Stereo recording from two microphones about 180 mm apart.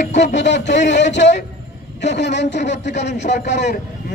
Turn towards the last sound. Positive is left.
turn(degrees=75)  # may be behind; listen again after turning